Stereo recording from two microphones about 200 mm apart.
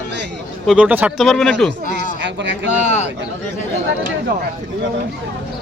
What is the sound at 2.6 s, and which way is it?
Speech, 35° left (ahead or behind).